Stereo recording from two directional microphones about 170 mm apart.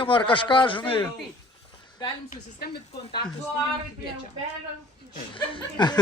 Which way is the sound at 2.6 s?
70° left (ahead or behind).